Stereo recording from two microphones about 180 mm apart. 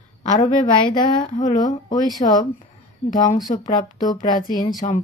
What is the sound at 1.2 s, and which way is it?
Speech, 45° left (ahead or behind).